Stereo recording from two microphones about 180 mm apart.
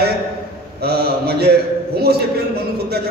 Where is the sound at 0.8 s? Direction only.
60° right (ahead or behind).